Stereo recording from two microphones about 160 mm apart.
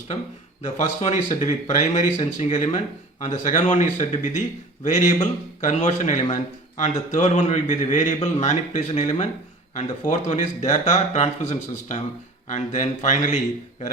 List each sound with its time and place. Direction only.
0.8 s a man's voice: 50° left (ahead or behind)